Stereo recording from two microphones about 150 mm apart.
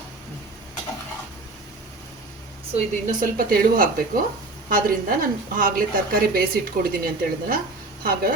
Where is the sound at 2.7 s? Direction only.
60° right (ahead or behind).